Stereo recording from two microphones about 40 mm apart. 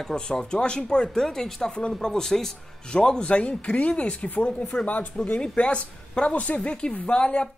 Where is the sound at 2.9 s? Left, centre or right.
Left.